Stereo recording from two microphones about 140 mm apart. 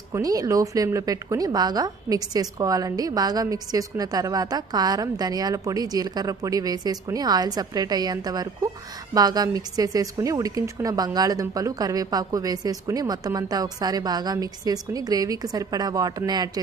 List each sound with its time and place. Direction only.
0.1 s a woman's voice: 25° right (ahead or behind)